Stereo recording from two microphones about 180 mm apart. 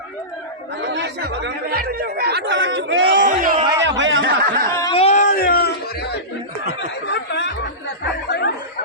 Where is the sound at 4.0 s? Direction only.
90° right.